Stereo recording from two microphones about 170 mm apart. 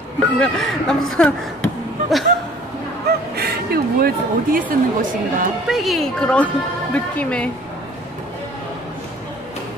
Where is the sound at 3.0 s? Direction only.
65° right (ahead or behind).